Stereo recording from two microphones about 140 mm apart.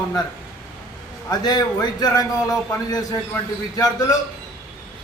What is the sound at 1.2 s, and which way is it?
A man's voice, 30° left (ahead or behind).